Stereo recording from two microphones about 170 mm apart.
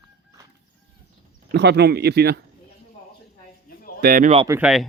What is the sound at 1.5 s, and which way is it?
Speech, 80° right.